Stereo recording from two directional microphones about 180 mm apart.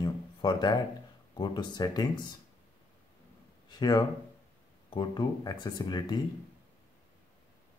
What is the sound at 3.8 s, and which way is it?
Speech, 20° left (ahead or behind).